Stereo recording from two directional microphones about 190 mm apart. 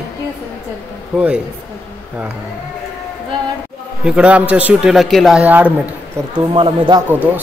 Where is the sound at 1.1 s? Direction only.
5° right (ahead or behind).